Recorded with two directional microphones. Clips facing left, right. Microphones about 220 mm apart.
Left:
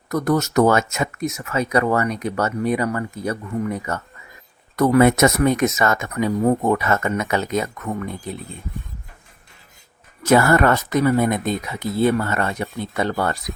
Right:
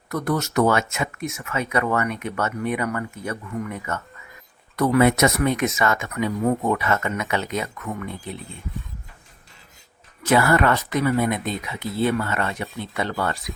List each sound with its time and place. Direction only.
0.1 s speech: 40° left (ahead or behind)
10.2 s speech: 45° left (ahead or behind)